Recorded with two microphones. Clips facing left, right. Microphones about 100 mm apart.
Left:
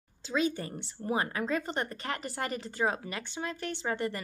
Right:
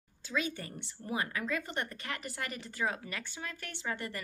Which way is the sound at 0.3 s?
30° left (ahead or behind).